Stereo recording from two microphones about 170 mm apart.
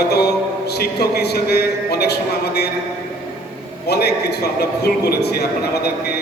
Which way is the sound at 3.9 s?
70° left (ahead or behind).